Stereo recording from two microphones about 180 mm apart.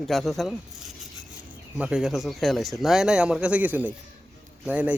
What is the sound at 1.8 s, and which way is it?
A man's voice, 5° right (ahead or behind).